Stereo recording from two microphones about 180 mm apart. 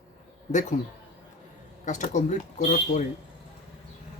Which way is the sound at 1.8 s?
40° left (ahead or behind).